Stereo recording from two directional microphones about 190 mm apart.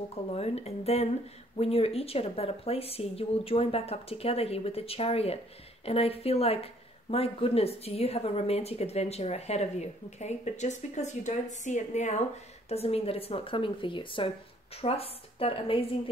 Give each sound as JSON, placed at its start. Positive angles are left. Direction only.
{"t": 0.1, "sound": "a woman's voice", "side_deg": 35}